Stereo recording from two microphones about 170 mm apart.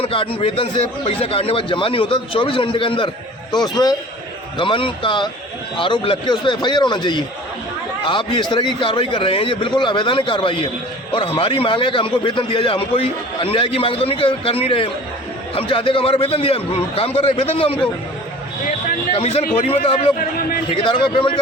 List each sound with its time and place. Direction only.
0.0 s a man's voice: 35° left (ahead or behind)
19.1 s a man's voice: 35° left (ahead or behind)